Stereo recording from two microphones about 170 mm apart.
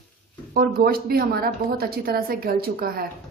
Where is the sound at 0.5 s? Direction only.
60° right (ahead or behind).